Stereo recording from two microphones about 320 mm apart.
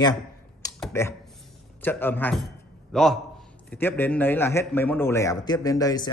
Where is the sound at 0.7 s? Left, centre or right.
Centre.